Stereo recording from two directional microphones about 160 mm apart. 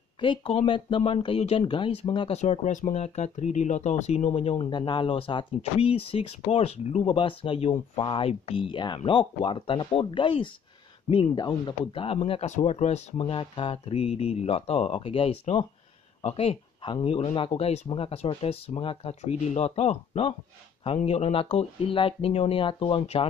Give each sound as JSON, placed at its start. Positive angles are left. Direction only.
{"t": 0.2, "sound": "speech", "side_deg": 30}
{"t": 2.4, "sound": "speech", "side_deg": 50}